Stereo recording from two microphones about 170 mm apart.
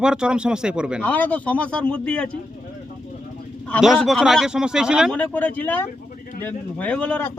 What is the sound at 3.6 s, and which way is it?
Speech, 5° left (ahead or behind).